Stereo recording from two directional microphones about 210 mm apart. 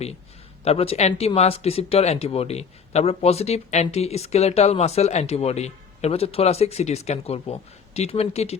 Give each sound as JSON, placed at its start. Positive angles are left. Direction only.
{"t": 0.6, "sound": "speech", "side_deg": 30}